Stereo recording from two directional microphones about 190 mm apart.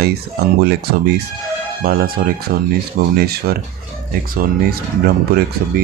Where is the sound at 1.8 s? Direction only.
50° right (ahead or behind).